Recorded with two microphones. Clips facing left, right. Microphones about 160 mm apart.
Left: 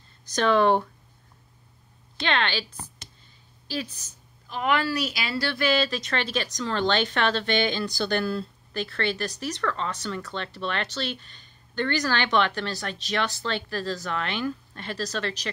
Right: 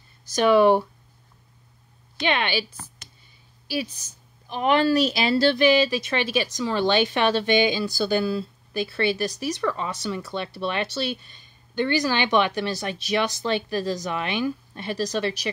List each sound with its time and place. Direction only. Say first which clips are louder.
0.3 s a woman's voice: right 4 dB; 10° right (ahead or behind)
2.2 s a woman's voice: right 2 dB; 10° right (ahead or behind)
3.6 s a woman's voice: right 4 dB; 10° right (ahead or behind)
4.5 s speech: right 5 dB; 25° right (ahead or behind)
5.7 s a woman's voice: right 5 dB; 15° right (ahead or behind)